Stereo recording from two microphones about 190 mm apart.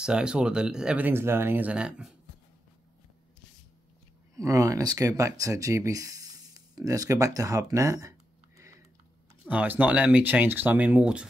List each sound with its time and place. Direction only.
0.0 s speech: 5° right (ahead or behind)
4.4 s speech: 15° right (ahead or behind)
8.5 s typing: 15° right (ahead or behind)
9.5 s speech: 10° right (ahead or behind)